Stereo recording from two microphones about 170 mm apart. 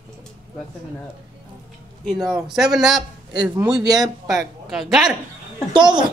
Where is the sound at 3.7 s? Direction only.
5° right (ahead or behind).